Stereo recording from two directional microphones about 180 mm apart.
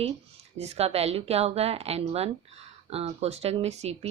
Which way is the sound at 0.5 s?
35° right (ahead or behind).